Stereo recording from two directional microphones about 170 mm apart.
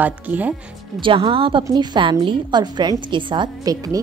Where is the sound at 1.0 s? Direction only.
30° right (ahead or behind).